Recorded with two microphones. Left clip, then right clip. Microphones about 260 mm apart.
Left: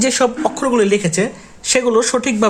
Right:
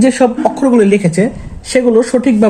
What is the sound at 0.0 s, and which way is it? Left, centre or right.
Speech, left.